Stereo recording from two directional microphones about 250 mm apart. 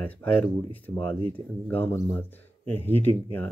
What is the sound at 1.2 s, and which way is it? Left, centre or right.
Speech, right.